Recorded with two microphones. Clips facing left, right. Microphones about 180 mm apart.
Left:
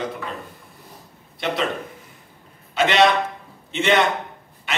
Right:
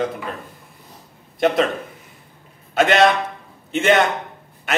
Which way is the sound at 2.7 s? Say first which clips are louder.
Right 2 dB; 50° right (ahead or behind).